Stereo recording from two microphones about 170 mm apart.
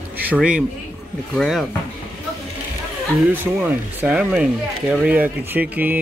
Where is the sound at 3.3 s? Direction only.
10° right (ahead or behind).